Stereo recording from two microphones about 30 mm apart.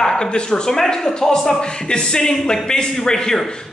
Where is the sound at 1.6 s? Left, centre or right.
Left.